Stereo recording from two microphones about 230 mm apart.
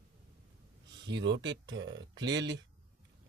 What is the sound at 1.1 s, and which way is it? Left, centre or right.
Speech, right.